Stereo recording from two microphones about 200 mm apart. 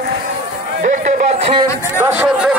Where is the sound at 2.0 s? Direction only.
10° right (ahead or behind).